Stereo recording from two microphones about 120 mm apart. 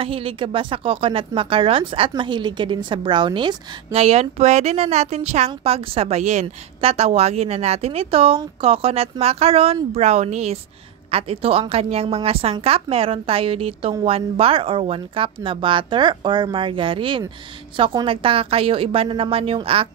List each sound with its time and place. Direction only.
0.0 s speech: 50° right (ahead or behind)
3.9 s a woman's voice: 60° right (ahead or behind)
6.4 s a woman's voice: 55° right (ahead or behind)
9.9 s speech: 65° right (ahead or behind)
11.1 s a woman's voice: 55° right (ahead or behind)